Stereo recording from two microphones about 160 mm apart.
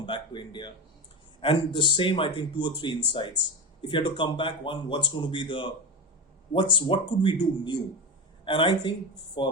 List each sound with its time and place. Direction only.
0.0 s speech: 30° left (ahead or behind)